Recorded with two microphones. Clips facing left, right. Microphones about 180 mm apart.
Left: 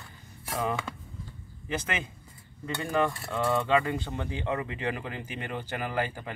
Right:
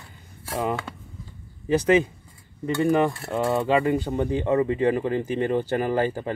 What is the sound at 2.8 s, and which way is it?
Speech, 30° right (ahead or behind).